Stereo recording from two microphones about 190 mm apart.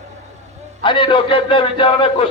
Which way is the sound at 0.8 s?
25° left (ahead or behind).